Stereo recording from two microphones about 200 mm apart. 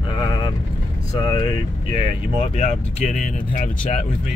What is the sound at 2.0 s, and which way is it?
Speech, 30° left (ahead or behind).